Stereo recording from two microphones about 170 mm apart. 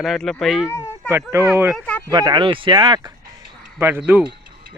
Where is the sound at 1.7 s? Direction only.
5° left (ahead or behind).